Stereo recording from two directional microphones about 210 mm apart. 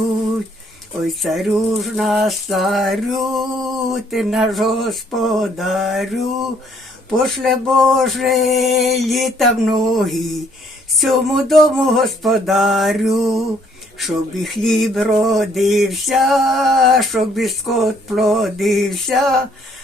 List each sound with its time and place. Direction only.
1.0 s male singing: centre (ahead or behind)